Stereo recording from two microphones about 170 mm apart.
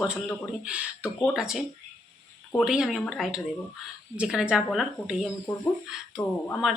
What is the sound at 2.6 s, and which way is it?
Speech, 5° right (ahead or behind).